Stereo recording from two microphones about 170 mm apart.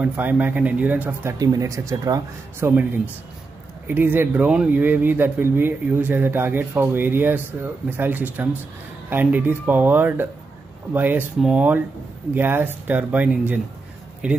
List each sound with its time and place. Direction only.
0.0 s speech: 10° right (ahead or behind)
1.4 s speech: 20° right (ahead or behind)